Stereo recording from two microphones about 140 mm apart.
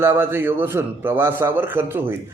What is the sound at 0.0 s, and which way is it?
A man's voice, 15° right (ahead or behind).